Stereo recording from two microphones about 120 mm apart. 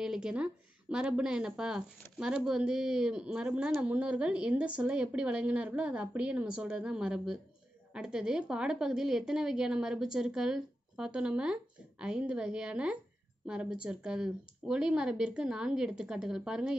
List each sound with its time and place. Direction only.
0.0 s a woman's voice: 5° right (ahead or behind)